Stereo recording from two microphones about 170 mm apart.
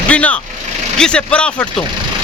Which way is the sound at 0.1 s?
10° left (ahead or behind).